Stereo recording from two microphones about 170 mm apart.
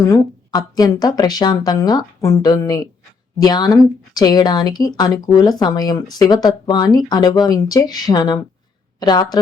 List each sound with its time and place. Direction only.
0.0 s a woman's voice: 20° left (ahead or behind)